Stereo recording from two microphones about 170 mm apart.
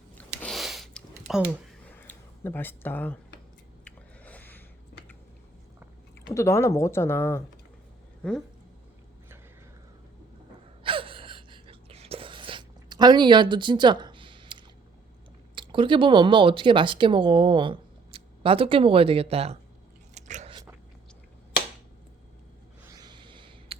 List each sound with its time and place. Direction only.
0.4 s a sound: centre (ahead or behind)
6.3 s speech: 15° left (ahead or behind)
10.8 s gasp: 30° right (ahead or behind)
15.5 s speech: 30° right (ahead or behind)
20.1 s biting: 45° right (ahead or behind)
22.9 s a sound: 25° right (ahead or behind)